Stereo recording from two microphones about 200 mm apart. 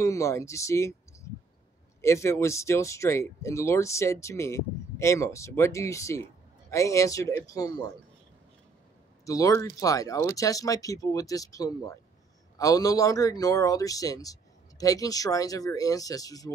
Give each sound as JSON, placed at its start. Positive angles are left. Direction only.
{"t": 0.0, "sound": "speech", "side_deg": 15}
{"t": 2.0, "sound": "speech", "side_deg": 15}
{"t": 9.2, "sound": "speech", "side_deg": 15}